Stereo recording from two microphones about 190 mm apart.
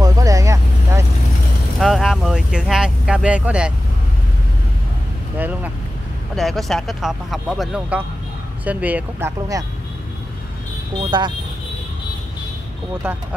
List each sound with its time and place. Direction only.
0.0 s vehicle: 20° right (ahead or behind)
1.8 s vehicle: centre (ahead or behind)
5.4 s speech: 10° right (ahead or behind)
11.0 s speech: 25° right (ahead or behind)